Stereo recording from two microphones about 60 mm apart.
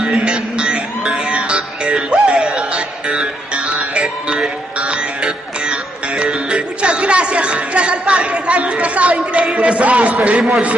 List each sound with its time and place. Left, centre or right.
0.0 s music: centre
9.3 s a man's voice: centre